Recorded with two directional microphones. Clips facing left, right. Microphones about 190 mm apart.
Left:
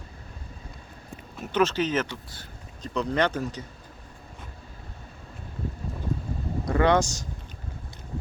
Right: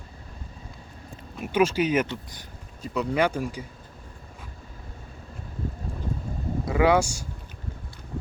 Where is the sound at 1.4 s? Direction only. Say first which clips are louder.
Right 2 dB; 10° right (ahead or behind).